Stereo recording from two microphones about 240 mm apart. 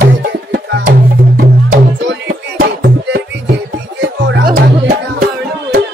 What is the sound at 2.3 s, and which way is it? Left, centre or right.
Music, right.